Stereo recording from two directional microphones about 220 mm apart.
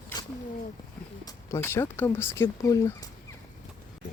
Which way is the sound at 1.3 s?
10° left (ahead or behind).